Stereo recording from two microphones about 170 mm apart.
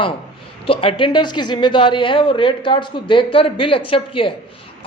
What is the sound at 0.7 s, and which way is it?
A man's voice, 30° left (ahead or behind).